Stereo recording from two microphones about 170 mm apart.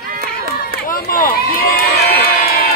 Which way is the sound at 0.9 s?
55° left (ahead or behind).